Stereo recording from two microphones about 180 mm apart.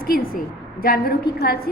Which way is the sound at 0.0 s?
55° left (ahead or behind).